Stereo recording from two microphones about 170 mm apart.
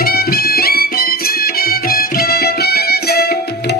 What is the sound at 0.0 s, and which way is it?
Music, 65° left (ahead or behind).